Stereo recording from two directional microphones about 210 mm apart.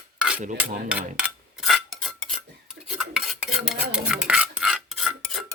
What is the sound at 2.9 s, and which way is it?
Stir, centre (ahead or behind).